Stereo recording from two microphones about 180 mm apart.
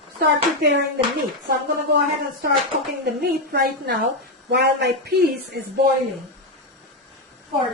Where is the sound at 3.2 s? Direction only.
60° right (ahead or behind).